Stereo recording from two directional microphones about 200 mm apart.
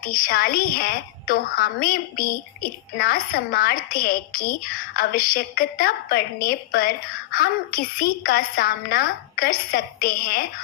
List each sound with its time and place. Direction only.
0.0 s a woman's voice: 45° left (ahead or behind)